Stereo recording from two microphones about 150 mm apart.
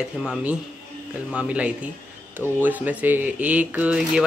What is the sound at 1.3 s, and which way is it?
Speech, 5° right (ahead or behind).